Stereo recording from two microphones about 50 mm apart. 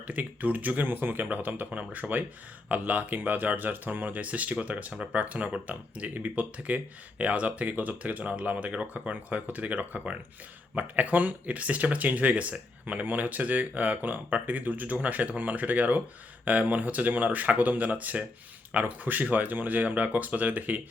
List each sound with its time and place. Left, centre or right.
0.1 s speech: right